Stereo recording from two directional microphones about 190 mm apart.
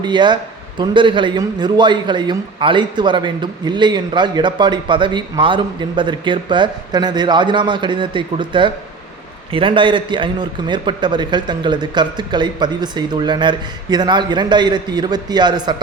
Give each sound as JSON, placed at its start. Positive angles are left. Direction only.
{"t": 0.0, "sound": "a man's voice", "side_deg": -25}